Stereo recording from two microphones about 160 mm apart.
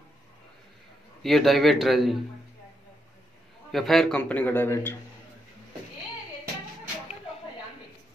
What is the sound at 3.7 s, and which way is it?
A man's voice, centre (ahead or behind).